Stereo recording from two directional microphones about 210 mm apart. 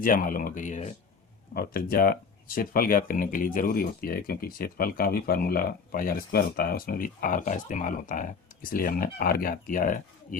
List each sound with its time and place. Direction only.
0.0 s speech: 40° left (ahead or behind)